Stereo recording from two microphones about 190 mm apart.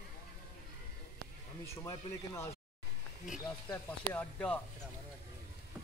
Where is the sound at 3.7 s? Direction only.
10° left (ahead or behind).